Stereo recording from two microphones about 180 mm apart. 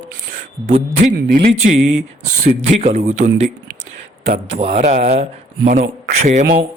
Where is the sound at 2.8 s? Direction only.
35° right (ahead or behind).